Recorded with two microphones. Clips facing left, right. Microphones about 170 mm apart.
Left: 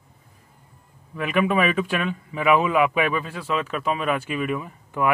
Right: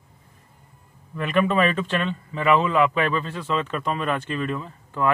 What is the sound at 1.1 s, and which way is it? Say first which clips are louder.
Speech: even; 5° left (ahead or behind).